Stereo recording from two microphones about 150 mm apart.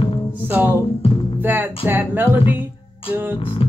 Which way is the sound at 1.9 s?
15° right (ahead or behind).